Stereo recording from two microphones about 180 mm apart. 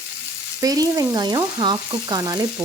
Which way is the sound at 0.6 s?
20° right (ahead or behind).